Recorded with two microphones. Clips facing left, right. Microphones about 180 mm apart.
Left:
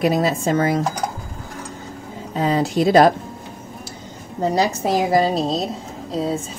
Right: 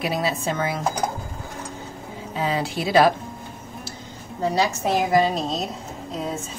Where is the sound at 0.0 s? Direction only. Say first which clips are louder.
Left 6 dB; 45° left (ahead or behind).